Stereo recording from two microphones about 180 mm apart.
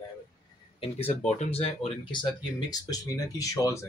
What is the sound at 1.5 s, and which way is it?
Speech, 35° left (ahead or behind).